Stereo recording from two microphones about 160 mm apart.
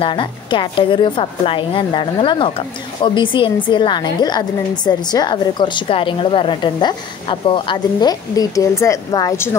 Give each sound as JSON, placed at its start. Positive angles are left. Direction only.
{"t": 0.0, "sound": "a woman's voice", "side_deg": 30}